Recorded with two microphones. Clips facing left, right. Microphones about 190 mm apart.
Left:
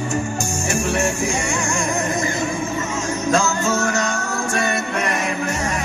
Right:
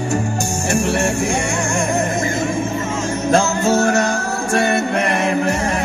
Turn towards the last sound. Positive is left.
turn(degrees=-55)  # may be behind; listen again after turning